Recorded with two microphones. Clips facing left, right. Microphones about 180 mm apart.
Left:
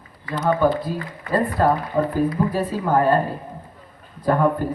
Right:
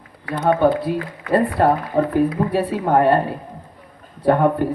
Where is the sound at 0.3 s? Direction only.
65° right (ahead or behind).